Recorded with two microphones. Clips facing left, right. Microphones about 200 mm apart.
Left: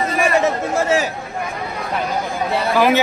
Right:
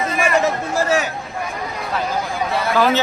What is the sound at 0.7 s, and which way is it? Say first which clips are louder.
Speech: even; 25° left (ahead or behind).